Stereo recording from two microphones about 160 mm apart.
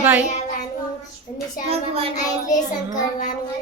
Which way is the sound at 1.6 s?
40° right (ahead or behind).